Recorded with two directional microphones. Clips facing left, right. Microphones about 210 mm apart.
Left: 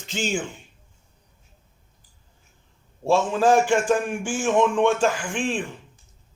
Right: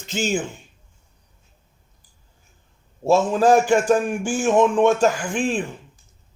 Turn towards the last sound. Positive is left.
turn(degrees=-40)  # may be behind; listen again after turning